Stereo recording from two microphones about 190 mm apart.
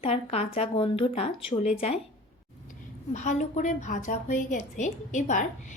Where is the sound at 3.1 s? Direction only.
40° left (ahead or behind).